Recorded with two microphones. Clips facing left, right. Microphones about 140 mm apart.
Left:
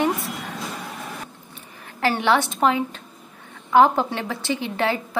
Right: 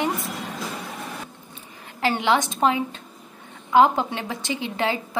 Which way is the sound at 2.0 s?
15° right (ahead or behind).